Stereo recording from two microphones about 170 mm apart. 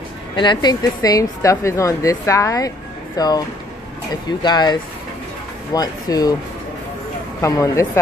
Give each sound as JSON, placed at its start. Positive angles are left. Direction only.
{"t": 0.4, "sound": "a woman's voice", "side_deg": 25}
{"t": 7.4, "sound": "a woman's voice", "side_deg": 20}